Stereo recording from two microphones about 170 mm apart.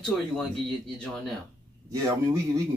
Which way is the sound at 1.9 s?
20° right (ahead or behind).